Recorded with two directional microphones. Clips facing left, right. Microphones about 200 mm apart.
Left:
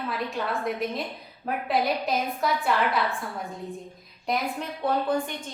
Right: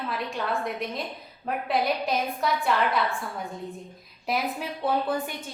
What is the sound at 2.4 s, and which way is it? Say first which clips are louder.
Speech: left 1 dB; centre (ahead or behind).